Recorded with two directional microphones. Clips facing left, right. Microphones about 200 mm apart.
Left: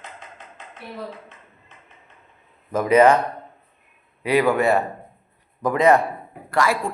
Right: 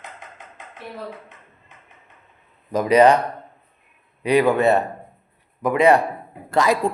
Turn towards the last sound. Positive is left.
turn(degrees=-20)  # may be behind; listen again after turning